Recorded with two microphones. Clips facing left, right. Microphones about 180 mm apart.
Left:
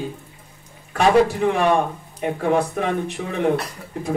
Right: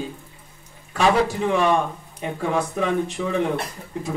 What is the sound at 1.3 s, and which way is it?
Speech, 60° left (ahead or behind).